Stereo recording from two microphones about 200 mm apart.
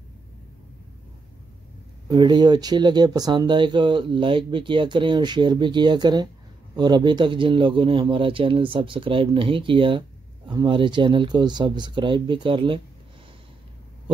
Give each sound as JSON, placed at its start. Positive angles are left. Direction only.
{"t": 2.0, "sound": "speech", "side_deg": -20}